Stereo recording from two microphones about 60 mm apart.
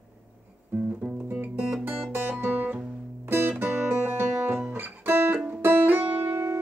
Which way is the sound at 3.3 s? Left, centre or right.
Right.